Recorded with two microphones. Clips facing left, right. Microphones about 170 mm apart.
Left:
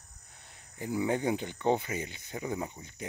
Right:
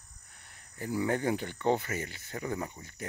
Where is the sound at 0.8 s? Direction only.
15° left (ahead or behind).